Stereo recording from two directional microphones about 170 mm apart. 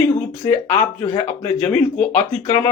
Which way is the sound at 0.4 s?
15° left (ahead or behind).